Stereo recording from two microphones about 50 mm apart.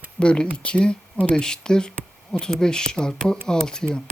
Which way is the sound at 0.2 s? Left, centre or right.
Centre.